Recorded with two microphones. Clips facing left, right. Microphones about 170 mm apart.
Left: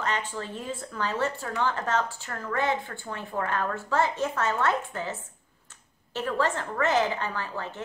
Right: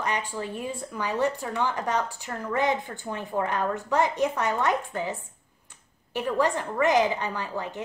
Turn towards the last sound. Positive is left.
turn(degrees=-15)  # may be behind; listen again after turning